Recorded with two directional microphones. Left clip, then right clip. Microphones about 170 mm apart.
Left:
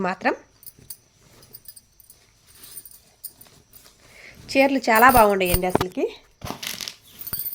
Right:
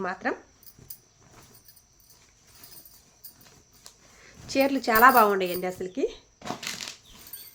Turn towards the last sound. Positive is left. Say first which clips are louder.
# left 2 dB
turn(degrees=45)  # may be behind; listen again after turning